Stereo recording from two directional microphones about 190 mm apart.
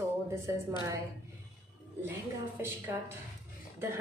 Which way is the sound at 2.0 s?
10° right (ahead or behind).